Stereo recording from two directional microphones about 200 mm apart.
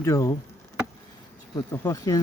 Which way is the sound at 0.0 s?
15° left (ahead or behind).